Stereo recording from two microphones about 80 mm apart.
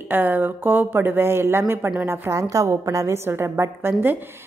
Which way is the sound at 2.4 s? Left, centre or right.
Right.